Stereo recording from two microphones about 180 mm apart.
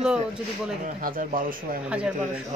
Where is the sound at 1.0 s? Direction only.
50° right (ahead or behind).